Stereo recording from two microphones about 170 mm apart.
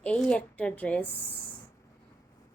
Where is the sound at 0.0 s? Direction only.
5° left (ahead or behind).